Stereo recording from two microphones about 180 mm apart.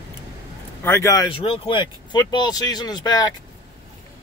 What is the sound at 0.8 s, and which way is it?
Speech, 15° left (ahead or behind).